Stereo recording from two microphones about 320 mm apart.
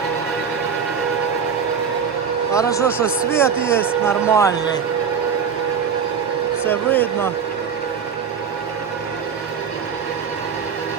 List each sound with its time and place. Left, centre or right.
2.5 s speech: centre
6.7 s a man's voice: centre